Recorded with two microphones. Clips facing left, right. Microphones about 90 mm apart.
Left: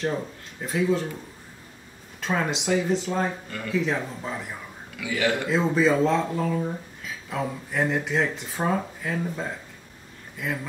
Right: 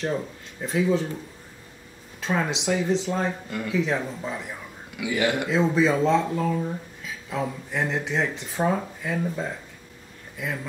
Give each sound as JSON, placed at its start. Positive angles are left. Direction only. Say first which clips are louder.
{"t": 0.6, "sound": "speech", "louder": "right 1 dB", "side_deg": 0}
{"t": 2.1, "sound": "speech", "louder": "even", "side_deg": 0}
{"t": 3.4, "sound": "a man's voice", "louder": "right 3 dB", "side_deg": -15}
{"t": 3.7, "sound": "speech", "louder": "even", "side_deg": 0}
{"t": 4.9, "sound": "a man's voice", "louder": "right 1 dB", "side_deg": -15}
{"t": 5.5, "sound": "speech", "louder": "even", "side_deg": 0}